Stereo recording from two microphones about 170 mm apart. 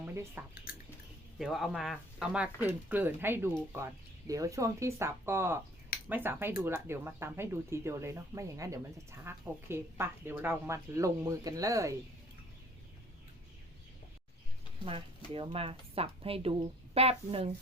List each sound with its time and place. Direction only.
0.0 s drip: 15° right (ahead or behind)
0.7 s squish: 60° left (ahead or behind)
1.4 s speech: centre (ahead or behind); by 11.9 s 20° right (ahead or behind)
14.8 s speech: 35° right (ahead or behind)